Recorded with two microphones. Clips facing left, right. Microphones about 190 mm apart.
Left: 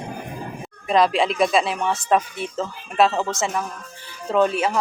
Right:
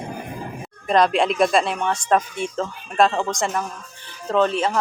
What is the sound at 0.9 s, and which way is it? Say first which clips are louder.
Speech: right 1 dB; centre (ahead or behind).